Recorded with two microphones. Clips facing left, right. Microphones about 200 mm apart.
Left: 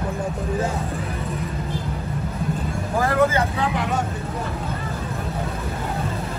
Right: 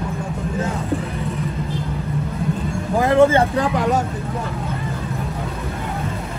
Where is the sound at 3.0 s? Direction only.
25° right (ahead or behind).